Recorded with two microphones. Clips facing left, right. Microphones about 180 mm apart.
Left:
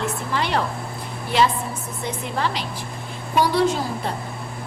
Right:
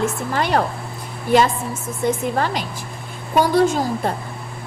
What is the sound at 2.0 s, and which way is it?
A woman's voice, 45° right (ahead or behind).